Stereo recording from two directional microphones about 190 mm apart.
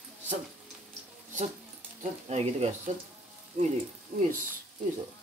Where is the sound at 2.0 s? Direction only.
35° right (ahead or behind).